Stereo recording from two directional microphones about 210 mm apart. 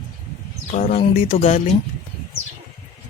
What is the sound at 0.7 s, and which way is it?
Speech, 30° left (ahead or behind).